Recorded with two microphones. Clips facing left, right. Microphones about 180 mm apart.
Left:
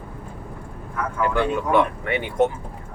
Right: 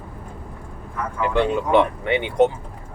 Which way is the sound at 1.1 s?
20° right (ahead or behind).